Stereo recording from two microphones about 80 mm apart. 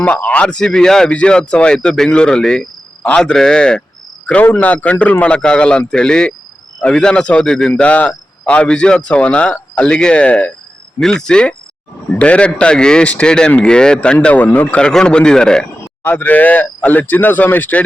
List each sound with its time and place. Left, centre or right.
0.0 s speech: centre
14.8 s speech: centre
16.0 s speech: left